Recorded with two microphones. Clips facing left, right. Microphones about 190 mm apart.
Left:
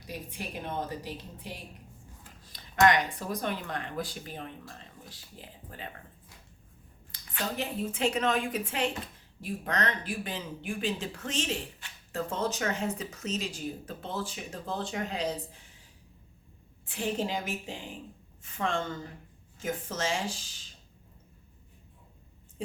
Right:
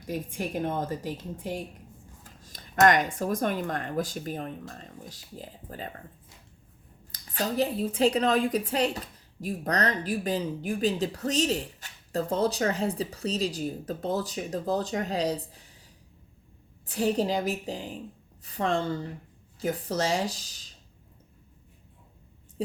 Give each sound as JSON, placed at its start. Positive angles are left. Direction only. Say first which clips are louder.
{"t": 0.1, "sound": "speech", "louder": "right 8 dB", "side_deg": -45}
{"t": 7.1, "sound": "speech", "louder": "right 5 dB", "side_deg": -40}
{"t": 16.8, "sound": "speech", "louder": "right 6 dB", "side_deg": -40}